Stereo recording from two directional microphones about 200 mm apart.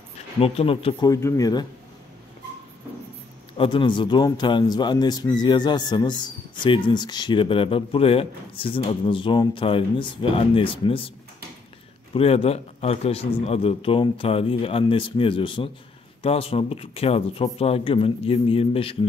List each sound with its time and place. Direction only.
0.4 s speech: 30° left (ahead or behind)
1.1 s speech: 15° left (ahead or behind)
3.5 s speech: 25° left (ahead or behind)
12.1 s speech: 30° left (ahead or behind)